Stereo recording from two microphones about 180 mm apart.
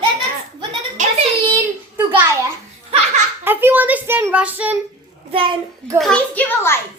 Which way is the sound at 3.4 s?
10° right (ahead or behind).